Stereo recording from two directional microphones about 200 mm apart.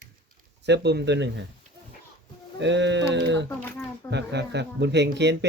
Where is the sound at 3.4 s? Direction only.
10° left (ahead or behind).